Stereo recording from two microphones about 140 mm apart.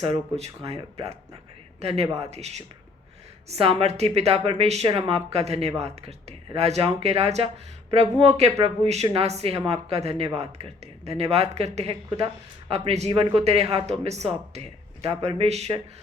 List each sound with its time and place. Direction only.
0.0 s speech: 45° right (ahead or behind)